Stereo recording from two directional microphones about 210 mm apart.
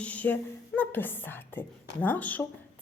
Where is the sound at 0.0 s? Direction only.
5° left (ahead or behind).